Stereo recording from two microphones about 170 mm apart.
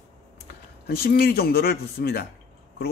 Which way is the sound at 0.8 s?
65° left (ahead or behind).